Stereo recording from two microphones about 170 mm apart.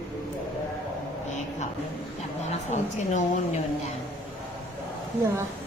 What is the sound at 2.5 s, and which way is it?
A woman's voice, 45° left (ahead or behind).